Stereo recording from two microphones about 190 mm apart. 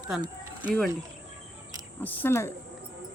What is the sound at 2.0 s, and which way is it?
Speech, 10° left (ahead or behind).